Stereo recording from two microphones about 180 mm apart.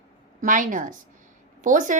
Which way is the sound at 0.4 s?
45° right (ahead or behind).